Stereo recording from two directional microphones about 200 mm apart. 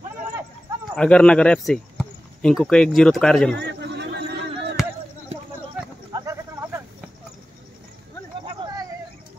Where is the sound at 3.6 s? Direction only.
60° right (ahead or behind).